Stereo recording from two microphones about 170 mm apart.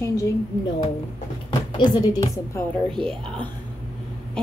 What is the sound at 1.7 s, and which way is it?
Speech, 25° left (ahead or behind).